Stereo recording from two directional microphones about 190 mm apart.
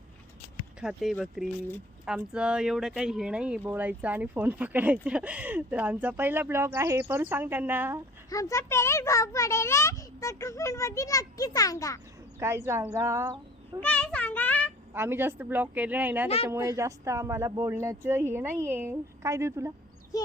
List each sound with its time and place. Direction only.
0.8 s speech: centre (ahead or behind)
8.3 s a child's voice: 15° left (ahead or behind)
12.4 s speech: 15° right (ahead or behind)
13.8 s child singing: 5° left (ahead or behind)
14.9 s speech: 10° right (ahead or behind)